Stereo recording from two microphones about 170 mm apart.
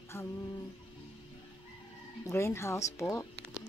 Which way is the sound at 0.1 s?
15° left (ahead or behind).